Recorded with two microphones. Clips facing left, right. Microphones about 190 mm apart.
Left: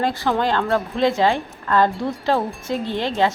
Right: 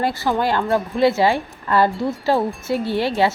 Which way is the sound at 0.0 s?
5° right (ahead or behind).